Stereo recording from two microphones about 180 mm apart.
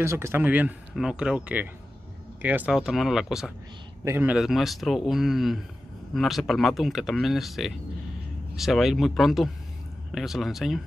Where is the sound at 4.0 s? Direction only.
15° right (ahead or behind).